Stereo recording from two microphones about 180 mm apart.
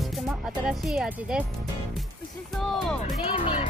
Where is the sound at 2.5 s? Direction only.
Centre (ahead or behind).